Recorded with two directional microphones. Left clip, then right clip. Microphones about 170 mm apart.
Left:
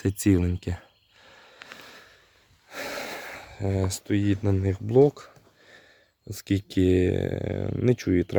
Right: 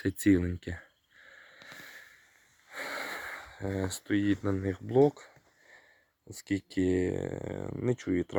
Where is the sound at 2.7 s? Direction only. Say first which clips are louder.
Left 3 dB; 35° left (ahead or behind).